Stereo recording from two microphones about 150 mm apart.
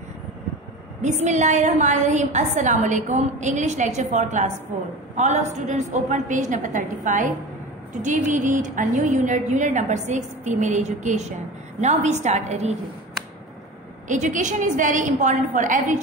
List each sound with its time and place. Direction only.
1.0 s a woman's voice: 50° right (ahead or behind)
14.0 s a woman's voice: 55° right (ahead or behind)